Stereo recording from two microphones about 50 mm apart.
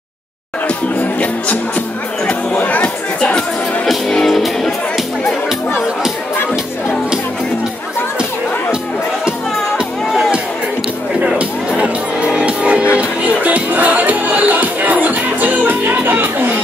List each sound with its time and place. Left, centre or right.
2.5 s chatter: left
3.2 s music: centre
4.3 s music: centre
11.3 s music: right